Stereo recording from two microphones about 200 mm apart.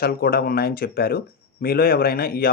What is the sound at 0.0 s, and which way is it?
Speech, 50° left (ahead or behind).